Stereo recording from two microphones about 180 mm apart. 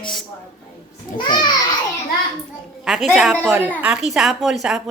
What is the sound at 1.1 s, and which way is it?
Speech, 25° left (ahead or behind).